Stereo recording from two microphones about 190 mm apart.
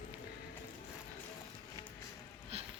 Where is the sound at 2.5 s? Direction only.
35° right (ahead or behind).